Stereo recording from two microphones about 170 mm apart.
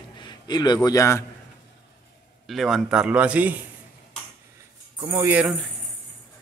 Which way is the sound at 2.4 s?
Centre (ahead or behind).